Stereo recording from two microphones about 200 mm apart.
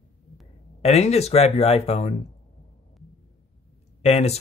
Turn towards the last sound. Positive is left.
turn(degrees=35)  # may be behind; listen again after turning